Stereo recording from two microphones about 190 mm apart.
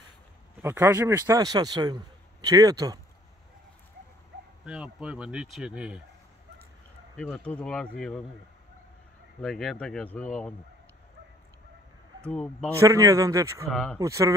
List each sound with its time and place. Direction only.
0.6 s speech: 10° right (ahead or behind)
4.6 s speech: 5° right (ahead or behind)
7.2 s speech: 5° left (ahead or behind)
9.4 s speech: centre (ahead or behind)
12.3 s speech: 5° left (ahead or behind)
12.7 s a man's voice: 15° right (ahead or behind)
13.7 s speech: centre (ahead or behind)
13.9 s a man's voice: 15° right (ahead or behind)